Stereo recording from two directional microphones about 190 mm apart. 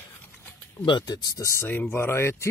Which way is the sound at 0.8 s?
20° left (ahead or behind).